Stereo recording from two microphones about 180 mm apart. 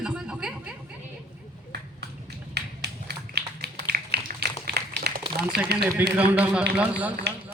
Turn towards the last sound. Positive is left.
turn(degrees=-5)  # may be behind; listen again after turning